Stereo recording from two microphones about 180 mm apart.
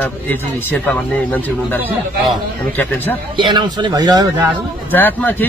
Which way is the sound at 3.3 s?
25° right (ahead or behind).